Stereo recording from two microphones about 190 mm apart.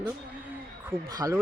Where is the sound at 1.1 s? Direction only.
20° right (ahead or behind).